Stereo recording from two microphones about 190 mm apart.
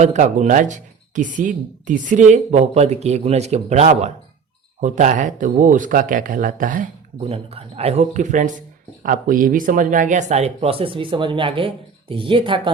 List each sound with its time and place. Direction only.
0.0 s speech: 40° right (ahead or behind)